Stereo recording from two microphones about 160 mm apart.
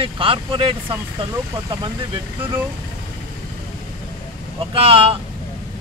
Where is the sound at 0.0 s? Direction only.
35° right (ahead or behind).